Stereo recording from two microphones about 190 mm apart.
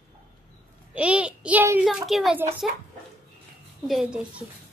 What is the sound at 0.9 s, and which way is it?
A child's voice, 5° right (ahead or behind).